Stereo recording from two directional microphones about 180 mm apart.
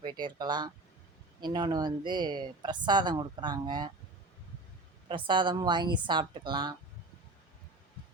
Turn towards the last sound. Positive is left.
turn(degrees=-25)  # may be behind; listen again after turning